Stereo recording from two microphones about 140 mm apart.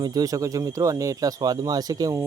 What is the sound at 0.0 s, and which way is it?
Speech, 25° right (ahead or behind).